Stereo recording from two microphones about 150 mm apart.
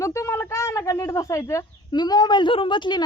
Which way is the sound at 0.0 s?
20° left (ahead or behind).